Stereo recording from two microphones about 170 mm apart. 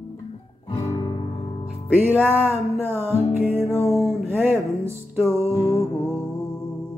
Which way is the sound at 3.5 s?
15° left (ahead or behind).